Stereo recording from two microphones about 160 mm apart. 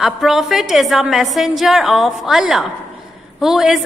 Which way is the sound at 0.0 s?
Centre (ahead or behind).